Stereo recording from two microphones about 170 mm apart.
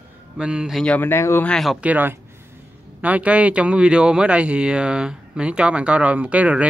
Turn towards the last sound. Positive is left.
turn(degrees=-10)  # may be behind; listen again after turning